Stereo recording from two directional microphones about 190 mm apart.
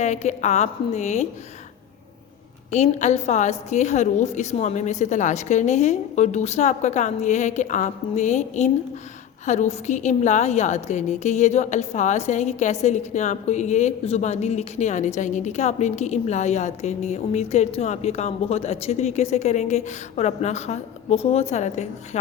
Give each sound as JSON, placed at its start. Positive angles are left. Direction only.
{"t": 0.0, "sound": "a woman's voice", "side_deg": 35}
{"t": 2.7, "sound": "a woman's voice", "side_deg": 35}